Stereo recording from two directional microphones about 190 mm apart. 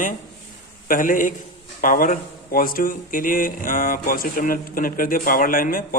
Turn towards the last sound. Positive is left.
turn(degrees=50)  # may be behind; listen again after turning